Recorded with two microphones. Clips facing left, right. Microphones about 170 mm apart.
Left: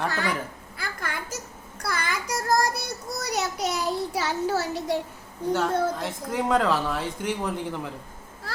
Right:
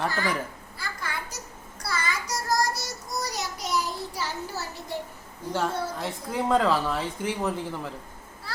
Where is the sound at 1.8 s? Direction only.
55° left (ahead or behind); by 4.9 s 80° left.